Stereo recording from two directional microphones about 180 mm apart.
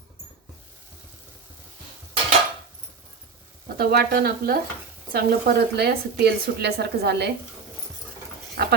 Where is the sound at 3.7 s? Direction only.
60° right (ahead or behind).